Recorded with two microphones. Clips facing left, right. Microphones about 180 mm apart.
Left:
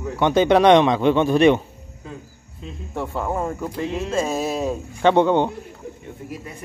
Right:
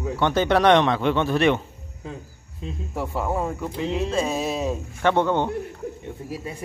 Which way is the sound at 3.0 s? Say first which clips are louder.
Left 1 dB; centre (ahead or behind).